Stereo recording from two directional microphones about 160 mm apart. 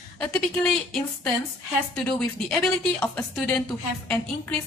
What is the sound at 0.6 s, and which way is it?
A woman's voice, 5° left (ahead or behind).